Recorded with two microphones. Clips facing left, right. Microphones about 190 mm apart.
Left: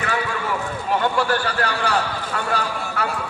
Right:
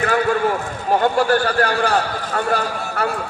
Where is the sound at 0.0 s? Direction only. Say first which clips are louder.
Right 7 dB; 45° right (ahead or behind).